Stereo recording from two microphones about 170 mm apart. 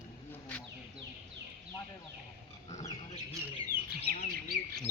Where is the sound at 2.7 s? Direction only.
40° left (ahead or behind).